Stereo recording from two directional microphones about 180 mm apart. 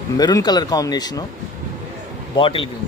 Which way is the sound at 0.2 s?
20° left (ahead or behind).